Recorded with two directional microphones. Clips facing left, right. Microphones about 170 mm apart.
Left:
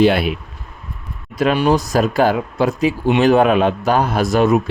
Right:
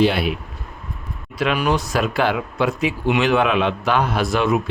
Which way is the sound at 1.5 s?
35° left (ahead or behind).